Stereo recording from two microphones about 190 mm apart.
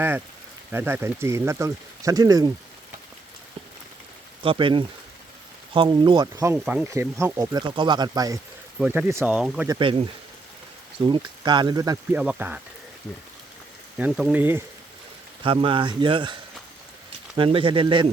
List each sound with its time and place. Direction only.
0.7 s speech: 10° right (ahead or behind)
4.4 s speech: 25° right (ahead or behind); by 9.6 s 5° right (ahead or behind)
9.6 s speech: 25° right (ahead or behind)
12.1 s speech: 10° right (ahead or behind)
14.0 s speech: 5° right (ahead or behind)
15.4 s speech: 25° right (ahead or behind)